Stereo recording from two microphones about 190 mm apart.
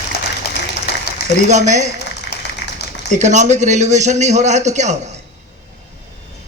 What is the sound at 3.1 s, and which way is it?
A man's voice, 40° right (ahead or behind).